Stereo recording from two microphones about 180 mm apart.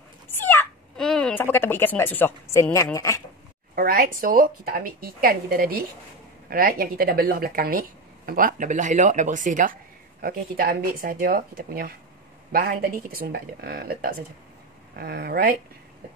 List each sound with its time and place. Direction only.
0.4 s speech: 10° left (ahead or behind)
3.7 s a woman's voice: 55° right (ahead or behind)